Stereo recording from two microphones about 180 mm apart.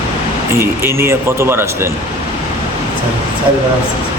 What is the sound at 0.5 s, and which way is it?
A man's voice, 15° right (ahead or behind).